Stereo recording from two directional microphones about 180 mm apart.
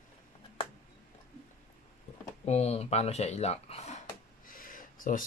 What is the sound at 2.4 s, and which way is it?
Speech, 35° left (ahead or behind).